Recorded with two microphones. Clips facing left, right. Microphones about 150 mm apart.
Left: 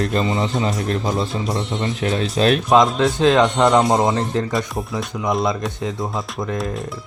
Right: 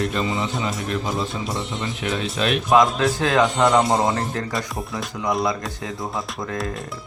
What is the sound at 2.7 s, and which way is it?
Speech, 20° left (ahead or behind).